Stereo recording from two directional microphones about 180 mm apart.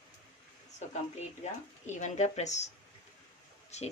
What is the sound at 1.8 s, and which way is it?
Speech, 40° left (ahead or behind).